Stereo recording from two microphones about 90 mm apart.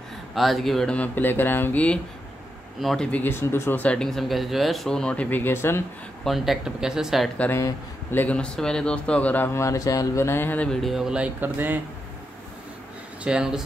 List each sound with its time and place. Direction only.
0.3 s speech: centre (ahead or behind)
0.9 s speech: 20° left (ahead or behind)
2.8 s speech: centre (ahead or behind)
3.1 s speech: 20° left (ahead or behind)
3.8 s speech: 10° left (ahead or behind); by 5.8 s 25° left (ahead or behind)
6.2 s speech: centre (ahead or behind)
7.5 s speech: 25° left (ahead or behind)
8.4 s speech: 5° left (ahead or behind)
9.5 s speech: 35° left (ahead or behind)
10.7 s speech: centre (ahead or behind); by 11.8 s 20° right (ahead or behind)
13.2 s speech: 10° right (ahead or behind)